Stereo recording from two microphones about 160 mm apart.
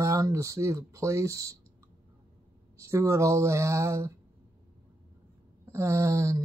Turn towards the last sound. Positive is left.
turn(degrees=-20)  # may be behind; listen again after turning